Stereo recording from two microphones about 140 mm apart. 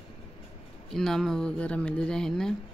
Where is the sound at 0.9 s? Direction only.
5° left (ahead or behind).